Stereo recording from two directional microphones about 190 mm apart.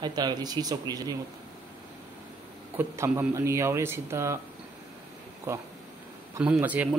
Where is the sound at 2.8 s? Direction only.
10° right (ahead or behind).